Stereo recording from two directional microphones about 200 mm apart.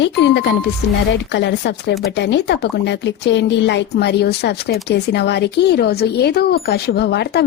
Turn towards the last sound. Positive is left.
turn(degrees=55)  # may be behind; listen again after turning